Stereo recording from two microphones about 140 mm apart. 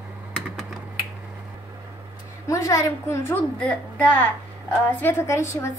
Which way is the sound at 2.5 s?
20° left (ahead or behind).